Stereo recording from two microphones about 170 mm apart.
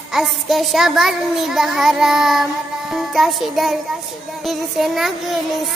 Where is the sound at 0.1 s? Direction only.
Centre (ahead or behind).